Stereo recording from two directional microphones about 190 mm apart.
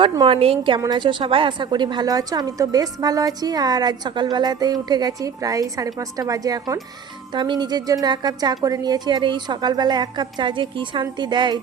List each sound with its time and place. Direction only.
0.0 s a woman's voice: 25° right (ahead or behind)